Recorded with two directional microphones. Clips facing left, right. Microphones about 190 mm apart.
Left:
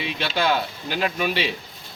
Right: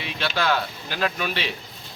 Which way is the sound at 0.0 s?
20° left (ahead or behind).